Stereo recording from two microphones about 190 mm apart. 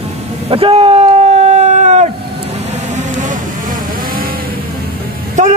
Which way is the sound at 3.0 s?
40° right (ahead or behind).